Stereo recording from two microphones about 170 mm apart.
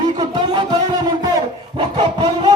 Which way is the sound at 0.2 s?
25° right (ahead or behind).